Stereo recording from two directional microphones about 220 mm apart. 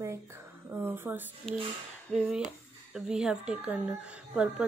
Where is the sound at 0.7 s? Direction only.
10° right (ahead or behind).